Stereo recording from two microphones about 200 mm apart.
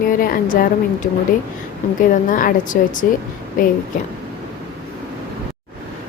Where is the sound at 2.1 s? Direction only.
40° left (ahead or behind).